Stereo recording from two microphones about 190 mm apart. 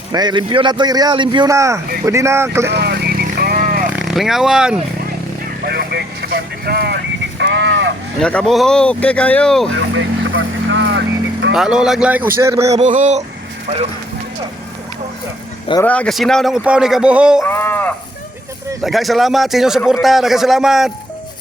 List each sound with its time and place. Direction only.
0.1 s a man's voice: 20° right (ahead or behind)
2.6 s vehicle: 60° right (ahead or behind)
3.8 s speech: 5° right (ahead or behind)
5.6 s vehicle: 60° right (ahead or behind)
8.2 s speech: 5° left (ahead or behind)
9.7 s vehicle: 85° right; by 11.0 s 70° right (ahead or behind)
11.5 s speech: 5° right (ahead or behind)
12.8 s speech: 40° right (ahead or behind)
15.8 s speech: 5° left (ahead or behind)
17.4 s speech: 10° left (ahead or behind)
18.8 s speech: centre (ahead or behind)